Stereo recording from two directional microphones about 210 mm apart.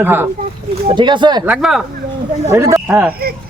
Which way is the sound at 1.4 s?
5° right (ahead or behind).